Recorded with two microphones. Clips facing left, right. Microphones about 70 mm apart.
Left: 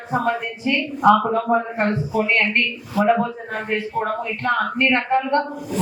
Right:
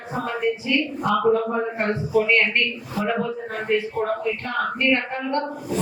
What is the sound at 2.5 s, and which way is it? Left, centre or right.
Speech, left.